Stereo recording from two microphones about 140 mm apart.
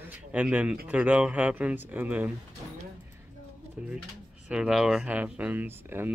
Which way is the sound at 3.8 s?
10° right (ahead or behind).